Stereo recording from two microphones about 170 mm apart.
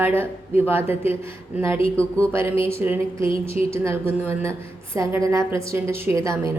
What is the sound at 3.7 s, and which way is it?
A woman's voice, 15° right (ahead or behind).